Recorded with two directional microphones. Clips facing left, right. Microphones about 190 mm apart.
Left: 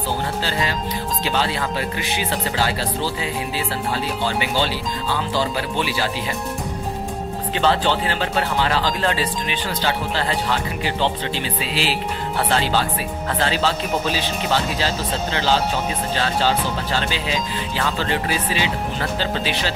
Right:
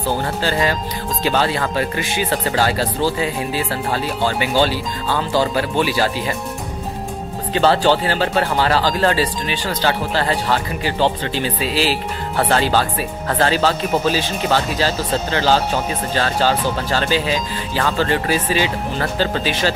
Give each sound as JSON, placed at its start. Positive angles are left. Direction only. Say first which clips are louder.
{"t": 0.4, "sound": "speech", "louder": "right 4 dB", "side_deg": -50}
{"t": 7.5, "sound": "speech", "louder": "right 5 dB", "side_deg": -40}